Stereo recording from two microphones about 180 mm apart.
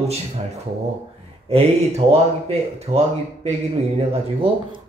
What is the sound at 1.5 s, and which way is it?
Speech, 35° right (ahead or behind).